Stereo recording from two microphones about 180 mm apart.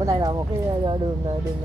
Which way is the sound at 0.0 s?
20° right (ahead or behind).